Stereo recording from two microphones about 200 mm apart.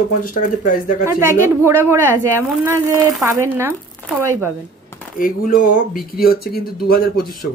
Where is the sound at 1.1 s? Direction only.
15° right (ahead or behind).